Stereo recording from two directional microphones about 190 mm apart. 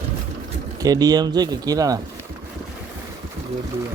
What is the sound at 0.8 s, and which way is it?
Speech, 20° right (ahead or behind).